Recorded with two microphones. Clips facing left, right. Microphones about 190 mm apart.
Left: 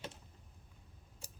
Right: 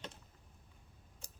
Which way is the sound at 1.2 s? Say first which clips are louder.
Left 3 dB; 10° left (ahead or behind).